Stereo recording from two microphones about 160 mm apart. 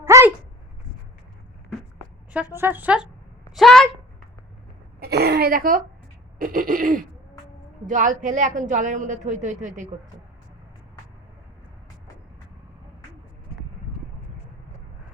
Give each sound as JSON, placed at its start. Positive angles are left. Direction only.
{"t": 0.0, "sound": "dog", "side_deg": -15}
{"t": 2.3, "sound": "a woman's voice", "side_deg": -10}
{"t": 3.5, "sound": "a child's voice", "side_deg": 0}
{"t": 4.9, "sound": "speech", "side_deg": -80}
{"t": 6.4, "sound": "a sound", "side_deg": -60}
{"t": 7.9, "sound": "a woman's voice", "side_deg": -55}